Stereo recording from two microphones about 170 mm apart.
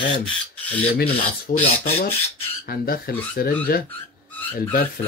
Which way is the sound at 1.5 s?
55° left (ahead or behind).